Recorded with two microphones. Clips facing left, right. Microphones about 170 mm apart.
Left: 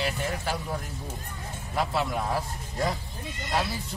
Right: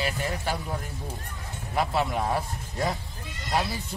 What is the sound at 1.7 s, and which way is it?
Speech, centre (ahead or behind).